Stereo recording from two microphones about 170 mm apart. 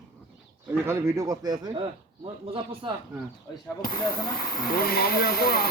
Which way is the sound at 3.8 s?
60° left (ahead or behind).